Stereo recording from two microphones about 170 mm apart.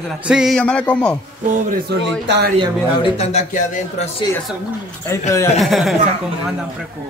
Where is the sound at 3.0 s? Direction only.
40° left (ahead or behind).